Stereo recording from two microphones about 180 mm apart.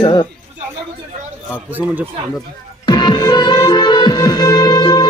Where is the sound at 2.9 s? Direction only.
25° left (ahead or behind).